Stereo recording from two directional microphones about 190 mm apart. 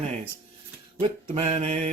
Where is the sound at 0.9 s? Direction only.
35° right (ahead or behind).